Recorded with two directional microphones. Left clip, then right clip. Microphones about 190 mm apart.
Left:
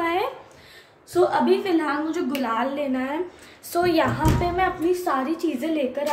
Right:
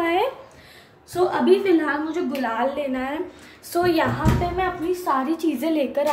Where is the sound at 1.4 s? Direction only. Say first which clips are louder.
Right 3 dB; 10° left (ahead or behind).